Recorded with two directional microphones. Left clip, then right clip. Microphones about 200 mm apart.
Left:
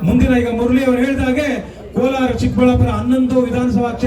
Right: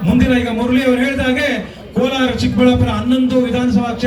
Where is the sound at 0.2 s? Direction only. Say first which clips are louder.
Left 1 dB; 55° left (ahead or behind).